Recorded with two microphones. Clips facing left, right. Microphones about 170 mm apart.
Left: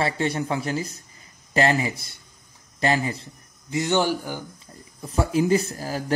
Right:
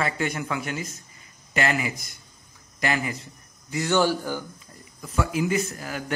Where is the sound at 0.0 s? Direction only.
30° left (ahead or behind).